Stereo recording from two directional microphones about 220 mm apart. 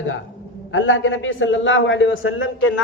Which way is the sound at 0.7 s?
65° left (ahead or behind).